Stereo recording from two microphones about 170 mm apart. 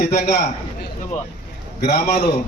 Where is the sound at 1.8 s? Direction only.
75° left (ahead or behind).